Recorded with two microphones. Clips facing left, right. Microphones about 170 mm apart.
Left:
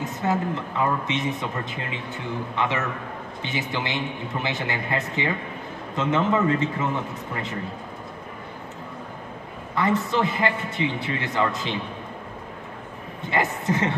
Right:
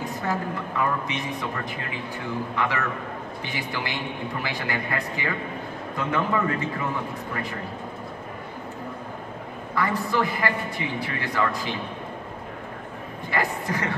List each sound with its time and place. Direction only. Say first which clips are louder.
0.0 s a woman's voice: left 3 dB; 20° left (ahead or behind)
9.8 s a woman's voice: left 2 dB; 20° left (ahead or behind)
13.3 s a woman's voice: left 3 dB; 20° left (ahead or behind)